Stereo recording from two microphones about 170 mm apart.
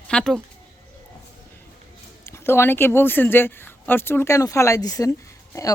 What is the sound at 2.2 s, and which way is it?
Speech, 15° left (ahead or behind).